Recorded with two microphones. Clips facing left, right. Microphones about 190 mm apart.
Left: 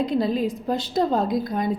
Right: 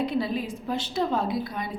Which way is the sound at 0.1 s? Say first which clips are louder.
Left 5 dB; 45° left (ahead or behind).